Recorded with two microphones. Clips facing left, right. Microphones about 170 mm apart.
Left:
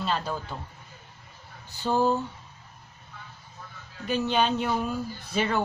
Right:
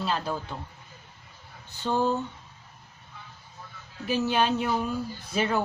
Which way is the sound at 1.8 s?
10° left (ahead or behind).